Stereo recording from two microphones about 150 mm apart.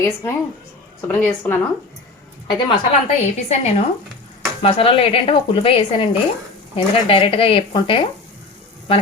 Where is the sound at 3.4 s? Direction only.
45° left (ahead or behind).